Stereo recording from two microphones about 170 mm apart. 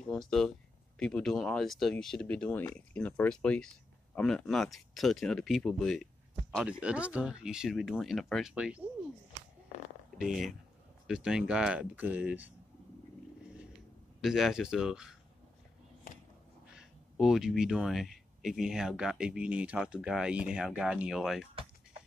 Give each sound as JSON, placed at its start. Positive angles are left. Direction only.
{"t": 0.1, "sound": "speech", "side_deg": 0}
{"t": 10.1, "sound": "speech", "side_deg": 0}
{"t": 14.2, "sound": "speech", "side_deg": 0}
{"t": 16.7, "sound": "speech", "side_deg": -5}